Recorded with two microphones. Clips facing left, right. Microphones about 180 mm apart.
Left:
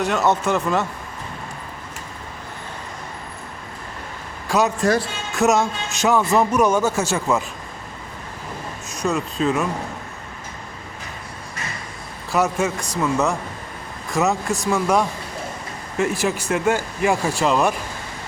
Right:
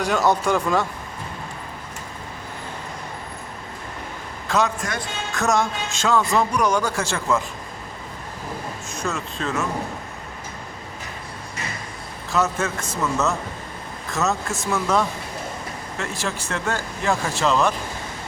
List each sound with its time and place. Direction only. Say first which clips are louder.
0.0 s speech: left 1 dB; centre (ahead or behind)
4.4 s a man's voice: left 2 dB; 15° left (ahead or behind)
4.8 s speech: left 10 dB; 30° left (ahead or behind)
5.4 s speech: left 4 dB; 20° left (ahead or behind)
8.9 s speech: left 6 dB; 15° left (ahead or behind)
12.3 s speech: left 3 dB; 15° left (ahead or behind)